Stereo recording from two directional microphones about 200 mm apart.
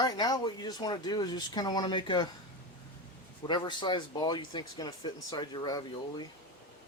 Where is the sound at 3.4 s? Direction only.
20° left (ahead or behind).